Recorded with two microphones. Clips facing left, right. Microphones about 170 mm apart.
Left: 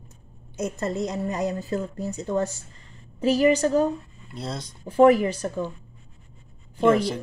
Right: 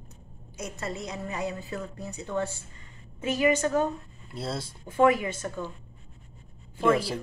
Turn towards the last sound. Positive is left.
turn(degrees=-5)  # may be behind; listen again after turning